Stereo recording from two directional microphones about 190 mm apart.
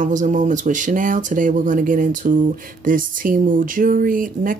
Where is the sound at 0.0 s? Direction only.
40° right (ahead or behind).